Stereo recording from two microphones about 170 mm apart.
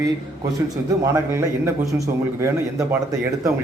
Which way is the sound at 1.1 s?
15° right (ahead or behind).